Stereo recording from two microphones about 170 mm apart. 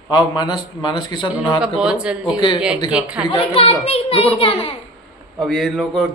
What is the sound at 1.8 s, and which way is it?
A man's voice, 5° right (ahead or behind).